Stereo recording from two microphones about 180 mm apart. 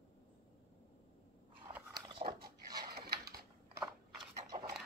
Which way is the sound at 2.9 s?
60° right (ahead or behind).